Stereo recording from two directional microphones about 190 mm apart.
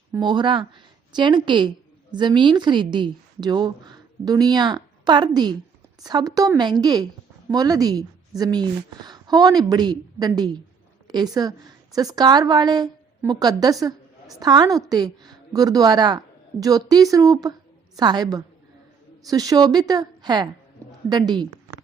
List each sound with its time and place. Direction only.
0.1 s a woman's voice: 25° right (ahead or behind)